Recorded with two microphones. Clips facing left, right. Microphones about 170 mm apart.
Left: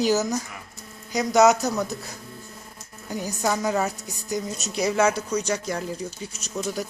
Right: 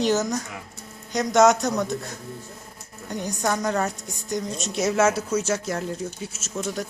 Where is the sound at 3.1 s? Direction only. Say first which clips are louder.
Even; 5° left (ahead or behind).